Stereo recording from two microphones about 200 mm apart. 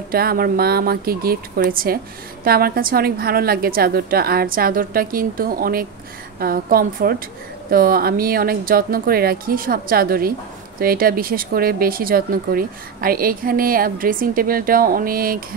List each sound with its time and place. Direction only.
0.1 s speech: 50° right (ahead or behind)